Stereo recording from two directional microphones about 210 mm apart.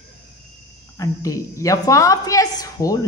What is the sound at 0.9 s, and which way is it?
A woman's voice, 15° left (ahead or behind).